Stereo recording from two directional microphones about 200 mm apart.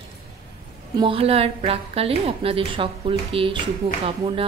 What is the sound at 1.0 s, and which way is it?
A woman's voice, 25° right (ahead or behind).